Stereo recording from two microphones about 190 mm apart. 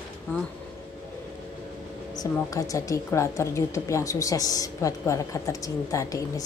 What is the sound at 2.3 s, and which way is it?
A woman's voice, 15° left (ahead or behind).